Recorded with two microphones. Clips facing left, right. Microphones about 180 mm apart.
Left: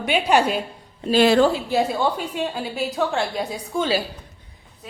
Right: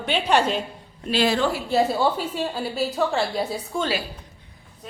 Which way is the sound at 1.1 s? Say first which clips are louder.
Left 6 dB; 50° left (ahead or behind).